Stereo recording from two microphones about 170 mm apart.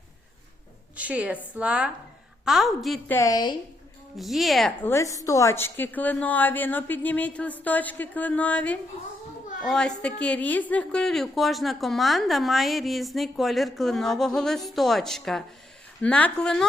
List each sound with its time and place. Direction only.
0.9 s a woman's voice: 10° right (ahead or behind)
3.1 s a woman's voice: 20° left (ahead or behind)
4.2 s a woman's voice: centre (ahead or behind)
4.8 s a woman's voice: 15° left (ahead or behind)